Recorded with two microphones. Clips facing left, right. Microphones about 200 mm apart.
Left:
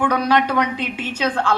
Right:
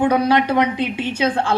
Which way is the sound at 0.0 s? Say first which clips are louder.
Right 2 dB; 25° right (ahead or behind).